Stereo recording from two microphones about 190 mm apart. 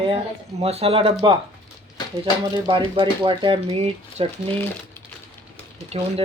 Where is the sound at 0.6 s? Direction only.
30° right (ahead or behind).